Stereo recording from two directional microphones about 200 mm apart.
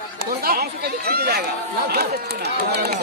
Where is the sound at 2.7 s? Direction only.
55° right (ahead or behind).